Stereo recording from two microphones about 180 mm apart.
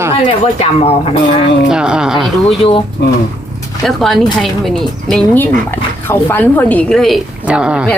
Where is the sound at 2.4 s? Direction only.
30° left (ahead or behind).